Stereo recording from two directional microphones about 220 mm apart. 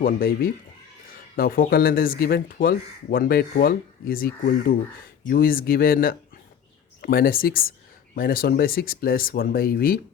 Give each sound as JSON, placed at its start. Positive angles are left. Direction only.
{"t": 0.0, "sound": "speech", "side_deg": 40}